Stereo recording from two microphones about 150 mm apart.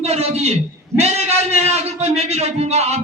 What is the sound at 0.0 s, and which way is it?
A man's voice, 45° right (ahead or behind).